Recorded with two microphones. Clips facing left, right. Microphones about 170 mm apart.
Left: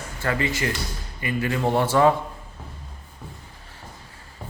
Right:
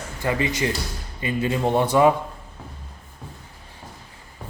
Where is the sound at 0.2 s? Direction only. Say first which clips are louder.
Right 2 dB; 20° right (ahead or behind).